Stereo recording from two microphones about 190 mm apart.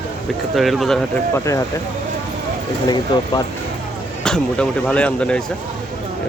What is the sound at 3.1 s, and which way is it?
Speech, 25° left (ahead or behind).